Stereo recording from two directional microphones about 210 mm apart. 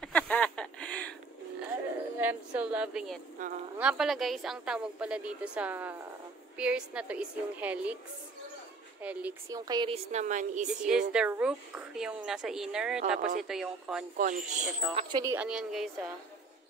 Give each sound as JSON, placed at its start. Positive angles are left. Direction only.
{"t": 0.0, "sound": "a sound", "side_deg": 5}
{"t": 1.6, "sound": "a sound", "side_deg": -10}
{"t": 3.4, "sound": "a woman's voice", "side_deg": -35}
{"t": 3.7, "sound": "a woman's voice", "side_deg": -5}
{"t": 9.0, "sound": "a woman's voice", "side_deg": -5}
{"t": 9.7, "sound": "speech", "side_deg": -20}
{"t": 10.1, "sound": "a woman's voice", "side_deg": -35}
{"t": 10.8, "sound": "a woman's voice", "side_deg": -5}
{"t": 14.1, "sound": "a woman's voice", "side_deg": -40}
{"t": 14.6, "sound": "a woman's voice", "side_deg": -5}
{"t": 15.0, "sound": "speech", "side_deg": -20}
{"t": 15.3, "sound": "a woman's voice", "side_deg": -5}